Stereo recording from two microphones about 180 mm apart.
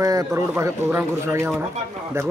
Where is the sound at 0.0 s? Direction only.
20° right (ahead or behind).